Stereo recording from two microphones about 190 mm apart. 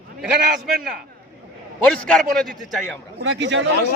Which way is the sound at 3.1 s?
70° right (ahead or behind).